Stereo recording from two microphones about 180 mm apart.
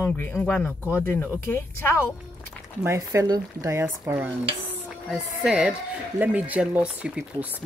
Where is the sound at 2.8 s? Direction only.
15° right (ahead or behind).